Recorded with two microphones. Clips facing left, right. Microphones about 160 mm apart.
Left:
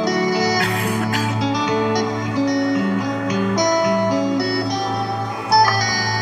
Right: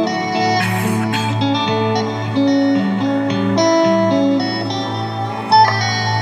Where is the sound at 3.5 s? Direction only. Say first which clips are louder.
Right 6 dB; 65° right (ahead or behind).